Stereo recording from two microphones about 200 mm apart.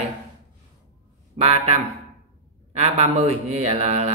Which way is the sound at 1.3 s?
30° right (ahead or behind).